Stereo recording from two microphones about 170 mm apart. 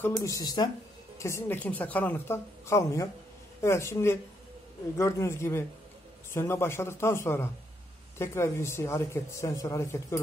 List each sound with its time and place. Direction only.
0.1 s speech: 20° left (ahead or behind)